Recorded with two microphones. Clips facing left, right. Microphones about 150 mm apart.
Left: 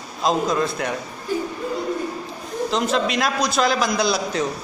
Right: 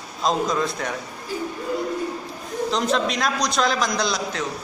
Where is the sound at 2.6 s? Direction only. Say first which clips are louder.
Left 1 dB; centre (ahead or behind).